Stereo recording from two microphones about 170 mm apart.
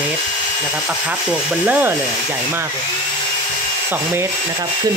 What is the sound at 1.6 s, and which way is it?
Speech, 10° right (ahead or behind).